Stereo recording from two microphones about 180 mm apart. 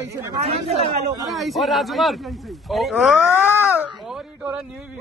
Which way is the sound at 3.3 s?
15° left (ahead or behind).